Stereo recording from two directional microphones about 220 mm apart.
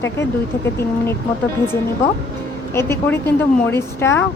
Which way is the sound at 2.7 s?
10° left (ahead or behind).